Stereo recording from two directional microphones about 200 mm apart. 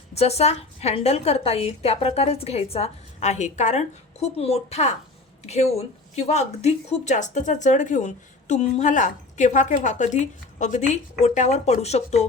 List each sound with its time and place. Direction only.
0.1 s a woman's voice: 30° left (ahead or behind)